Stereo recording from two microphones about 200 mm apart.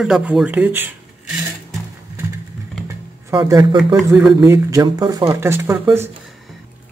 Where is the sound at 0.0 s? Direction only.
5° right (ahead or behind).